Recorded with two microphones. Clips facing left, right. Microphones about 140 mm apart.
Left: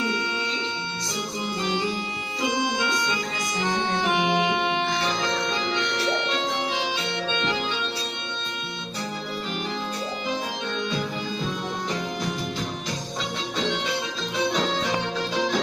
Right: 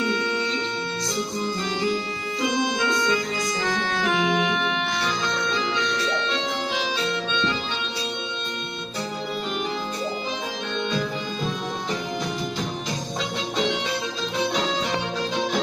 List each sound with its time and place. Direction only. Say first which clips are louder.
1.4 s music: left 2 dB; 25° left (ahead or behind)
2.4 s organ: right 1 dB; 25° left (ahead or behind)
3.6 s music: left 3 dB; 20° left (ahead or behind)